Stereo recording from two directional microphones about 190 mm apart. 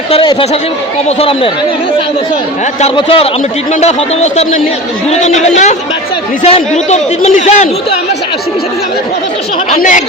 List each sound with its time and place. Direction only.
0.1 s a man's voice: 25° left (ahead or behind)
2.8 s a man's voice: 30° left (ahead or behind)
9.7 s speech: 45° left (ahead or behind)